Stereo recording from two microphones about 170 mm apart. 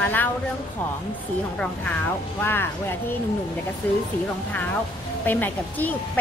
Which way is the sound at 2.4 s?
15° left (ahead or behind).